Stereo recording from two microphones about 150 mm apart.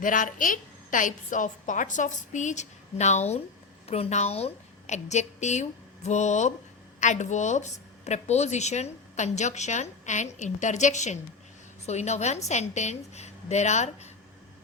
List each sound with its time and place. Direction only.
0.0 s a woman's voice: 60° left (ahead or behind)